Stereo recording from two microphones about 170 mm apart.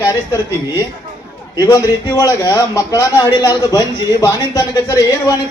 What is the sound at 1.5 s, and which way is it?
A man's voice, 20° left (ahead or behind).